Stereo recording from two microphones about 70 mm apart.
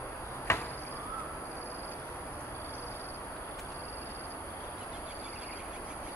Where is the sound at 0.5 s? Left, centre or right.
Left.